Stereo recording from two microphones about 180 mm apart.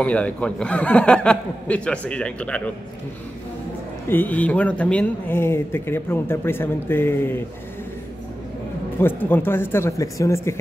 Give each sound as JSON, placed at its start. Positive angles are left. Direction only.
{"t": 0.0, "sound": "speech", "side_deg": 5}
{"t": 4.1, "sound": "speech", "side_deg": 10}
{"t": 8.9, "sound": "speech", "side_deg": 10}